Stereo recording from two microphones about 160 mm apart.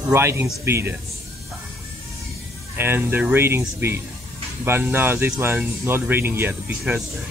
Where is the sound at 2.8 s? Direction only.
15° right (ahead or behind).